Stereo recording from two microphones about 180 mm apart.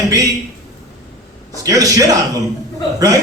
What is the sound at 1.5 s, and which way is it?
Speech, 20° right (ahead or behind).